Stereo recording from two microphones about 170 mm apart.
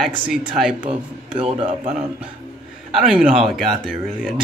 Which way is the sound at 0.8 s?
30° right (ahead or behind).